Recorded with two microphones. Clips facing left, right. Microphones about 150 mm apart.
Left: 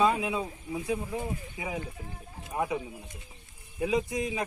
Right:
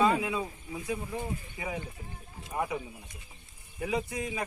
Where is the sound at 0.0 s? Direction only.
15° left (ahead or behind).